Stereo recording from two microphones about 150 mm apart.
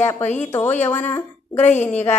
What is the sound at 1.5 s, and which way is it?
Speech, 50° left (ahead or behind).